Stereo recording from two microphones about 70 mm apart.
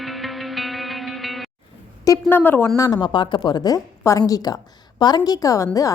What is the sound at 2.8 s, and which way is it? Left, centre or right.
Speech, left.